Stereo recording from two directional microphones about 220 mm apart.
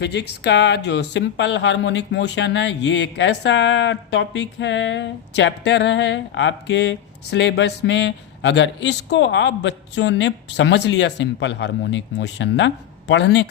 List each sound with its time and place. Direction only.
0.0 s speech: 50° left (ahead or behind)